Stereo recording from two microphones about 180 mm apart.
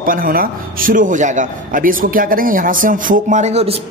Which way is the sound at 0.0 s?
50° right (ahead or behind).